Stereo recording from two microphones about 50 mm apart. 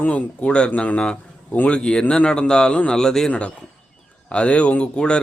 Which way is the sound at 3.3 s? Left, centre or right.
Left.